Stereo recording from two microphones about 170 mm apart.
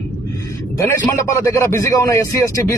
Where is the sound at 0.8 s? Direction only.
20° left (ahead or behind).